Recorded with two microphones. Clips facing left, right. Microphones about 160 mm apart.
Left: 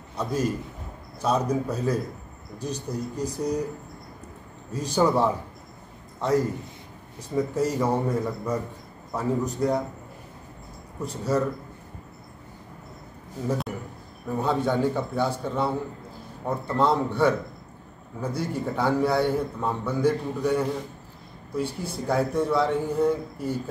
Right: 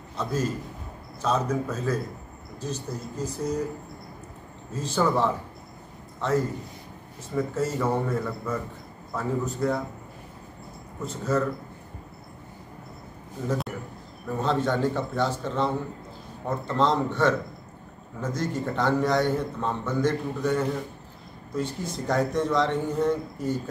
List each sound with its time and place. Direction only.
0.2 s a man's voice: 10° left (ahead or behind)
4.7 s a man's voice: 15° left (ahead or behind)
7.3 s a man's voice: 15° left (ahead or behind)
11.0 s a man's voice: 10° left (ahead or behind)
14.4 s a man's voice: 10° left (ahead or behind)